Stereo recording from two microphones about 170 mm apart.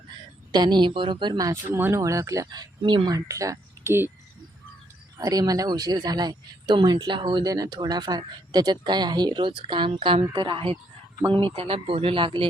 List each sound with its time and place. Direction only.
0.5 s speech: 25° right (ahead or behind)
5.1 s speech: 20° right (ahead or behind)